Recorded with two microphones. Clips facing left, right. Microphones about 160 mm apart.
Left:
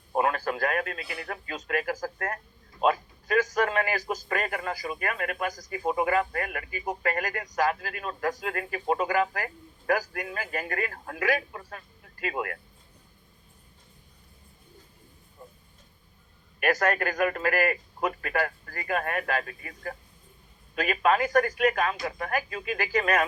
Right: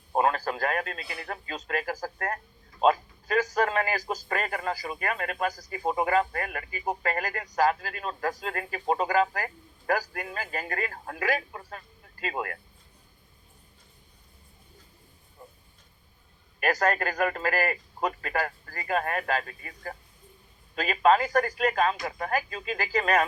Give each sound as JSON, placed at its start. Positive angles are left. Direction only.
{"t": 0.2, "sound": "a man's voice", "side_deg": -30}
{"t": 16.6, "sound": "a man's voice", "side_deg": -30}